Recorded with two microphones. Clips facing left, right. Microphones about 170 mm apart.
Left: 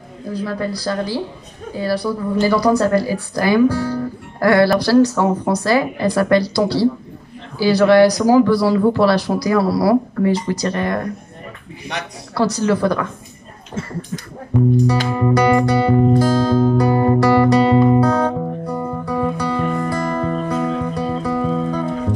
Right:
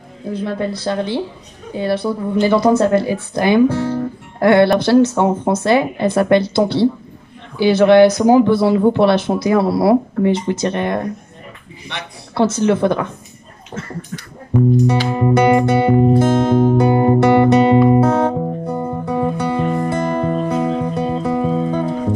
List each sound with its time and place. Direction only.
0.3 s speech: 25° right (ahead or behind)
12.6 s speech: 25° right (ahead or behind)
15.0 s music: 20° right (ahead or behind)